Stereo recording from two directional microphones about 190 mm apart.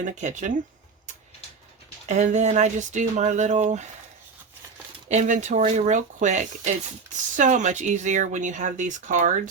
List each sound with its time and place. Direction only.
0.2 s speech: 40° right (ahead or behind)
2.0 s speech: 35° right (ahead or behind)
5.0 s speech: 40° right (ahead or behind)